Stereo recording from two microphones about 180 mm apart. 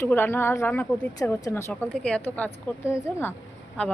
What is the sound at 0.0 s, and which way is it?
A woman's voice, 10° left (ahead or behind).